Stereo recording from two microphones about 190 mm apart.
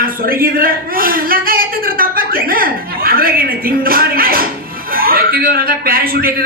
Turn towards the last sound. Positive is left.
turn(degrees=-50)  # may be behind; listen again after turning